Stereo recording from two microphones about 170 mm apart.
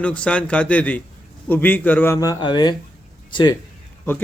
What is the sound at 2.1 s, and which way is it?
Speech, 20° left (ahead or behind).